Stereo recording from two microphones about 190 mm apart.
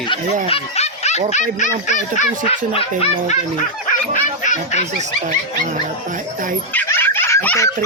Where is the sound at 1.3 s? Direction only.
40° left (ahead or behind).